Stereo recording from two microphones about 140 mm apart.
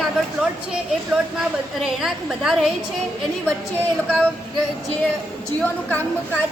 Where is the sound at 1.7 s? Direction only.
5° right (ahead or behind).